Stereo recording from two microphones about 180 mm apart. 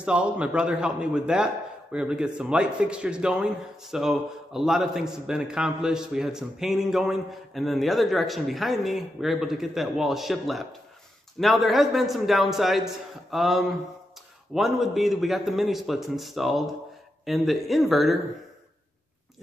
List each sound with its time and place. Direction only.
0.0 s a man's voice: 5° right (ahead or behind)